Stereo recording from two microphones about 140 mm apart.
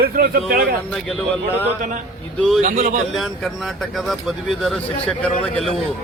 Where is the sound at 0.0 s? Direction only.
90° right.